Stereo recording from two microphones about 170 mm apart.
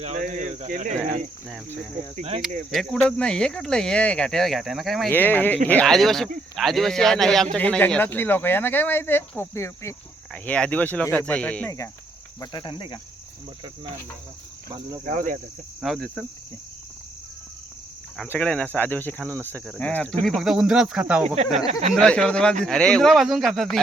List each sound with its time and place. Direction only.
0.0 s speech: 45° right (ahead or behind)
2.1 s speech: 35° right (ahead or behind)
2.6 s speech: centre (ahead or behind)
5.1 s speech: 10° left (ahead or behind)
12.4 s cricket: 30° left (ahead or behind)
14.7 s speech: 20° right (ahead or behind)
15.0 s speech: 50° right (ahead or behind)
15.8 s speech: centre (ahead or behind)
18.2 s speech: 5° left (ahead or behind)
21.7 s speech: 40° right (ahead or behind)
21.9 s speech: 5° left (ahead or behind)